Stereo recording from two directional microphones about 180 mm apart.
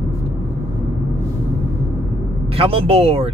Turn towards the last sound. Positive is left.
turn(degrees=-35)  # may be behind; listen again after turning